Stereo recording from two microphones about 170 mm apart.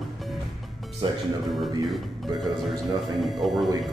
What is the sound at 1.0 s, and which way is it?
Speech, 30° right (ahead or behind).